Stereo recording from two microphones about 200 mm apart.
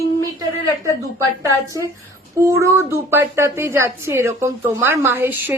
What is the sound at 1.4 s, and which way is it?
A woman's voice, 15° right (ahead or behind).